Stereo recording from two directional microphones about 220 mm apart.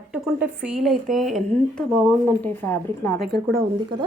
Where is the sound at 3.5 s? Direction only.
20° right (ahead or behind).